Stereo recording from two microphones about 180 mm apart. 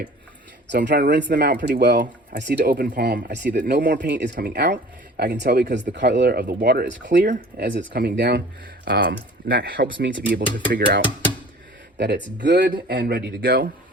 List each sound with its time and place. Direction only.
0.9 s speech: 65° right (ahead or behind)
1.3 s speech: 50° right (ahead or behind)
1.5 s speech: 65° right (ahead or behind)
3.7 s speech: 50° right (ahead or behind)
11.9 s speech: 75° right (ahead or behind); by 13.7 s 55° right (ahead or behind)